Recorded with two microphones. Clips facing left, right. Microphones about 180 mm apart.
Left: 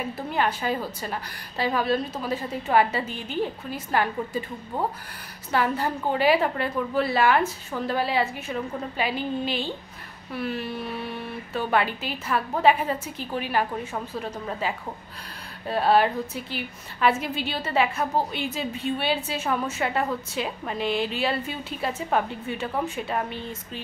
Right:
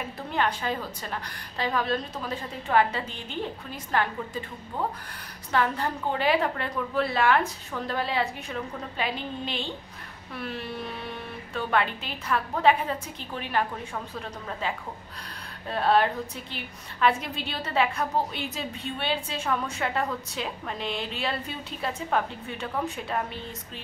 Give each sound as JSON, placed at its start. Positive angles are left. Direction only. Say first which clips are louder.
{"t": 0.3, "sound": "a woman's voice", "louder": "left 2 dB", "side_deg": 5}
{"t": 5.5, "sound": "a woman's voice", "louder": "left 2 dB", "side_deg": 10}
{"t": 15.7, "sound": "a woman's voice", "louder": "left 2 dB", "side_deg": 5}